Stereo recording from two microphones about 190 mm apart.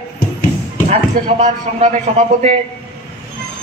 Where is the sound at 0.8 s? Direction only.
40° right (ahead or behind).